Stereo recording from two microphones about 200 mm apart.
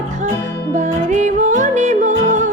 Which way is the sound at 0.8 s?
40° right (ahead or behind).